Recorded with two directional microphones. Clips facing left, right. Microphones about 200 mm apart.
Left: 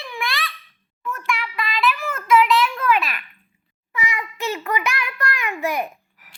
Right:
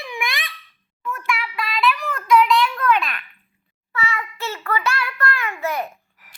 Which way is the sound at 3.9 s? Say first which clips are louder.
Right 1 dB; 15° left (ahead or behind).